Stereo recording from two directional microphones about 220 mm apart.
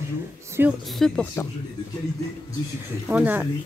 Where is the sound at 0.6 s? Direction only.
10° right (ahead or behind).